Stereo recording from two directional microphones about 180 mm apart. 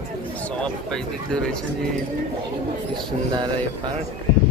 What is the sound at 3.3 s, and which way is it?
Speech, 25° right (ahead or behind).